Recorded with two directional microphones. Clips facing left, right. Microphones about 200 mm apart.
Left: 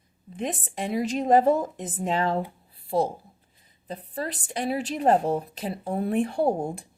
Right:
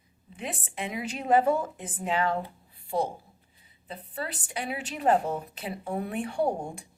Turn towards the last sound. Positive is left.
turn(degrees=40)  # may be behind; listen again after turning